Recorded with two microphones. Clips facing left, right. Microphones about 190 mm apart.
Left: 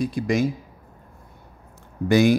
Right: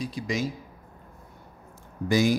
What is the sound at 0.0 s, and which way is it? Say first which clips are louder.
Speech: left 7 dB; 55° left (ahead or behind).